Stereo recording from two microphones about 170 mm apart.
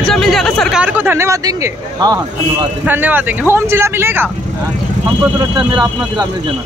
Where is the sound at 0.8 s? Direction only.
10° right (ahead or behind).